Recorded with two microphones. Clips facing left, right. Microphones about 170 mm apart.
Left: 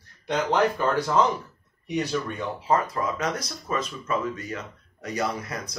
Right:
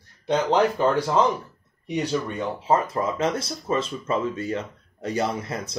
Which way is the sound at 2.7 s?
25° right (ahead or behind).